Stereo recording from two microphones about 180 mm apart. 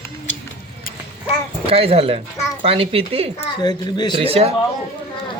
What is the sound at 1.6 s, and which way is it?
Speech, 30° right (ahead or behind).